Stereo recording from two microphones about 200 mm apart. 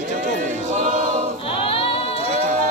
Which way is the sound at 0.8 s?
40° right (ahead or behind).